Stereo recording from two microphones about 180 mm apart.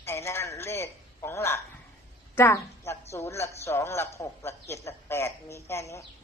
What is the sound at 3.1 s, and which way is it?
A man's voice, 15° left (ahead or behind).